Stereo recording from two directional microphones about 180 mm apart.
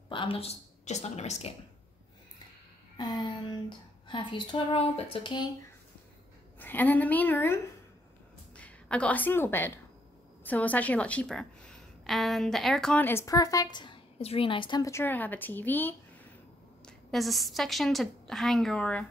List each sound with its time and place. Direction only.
0.1 s a woman's voice: 30° left (ahead or behind)
3.0 s speech: 25° left (ahead or behind)
6.6 s a woman's voice: 10° left (ahead or behind)
16.8 s a woman's voice: centre (ahead or behind)